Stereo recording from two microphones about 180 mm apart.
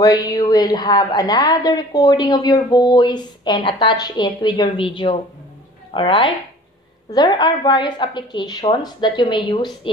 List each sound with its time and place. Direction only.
0.0 s a woman's voice: 20° left (ahead or behind)